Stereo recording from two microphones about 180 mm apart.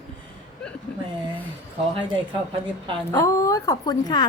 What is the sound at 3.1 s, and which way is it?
A woman's voice, 15° left (ahead or behind).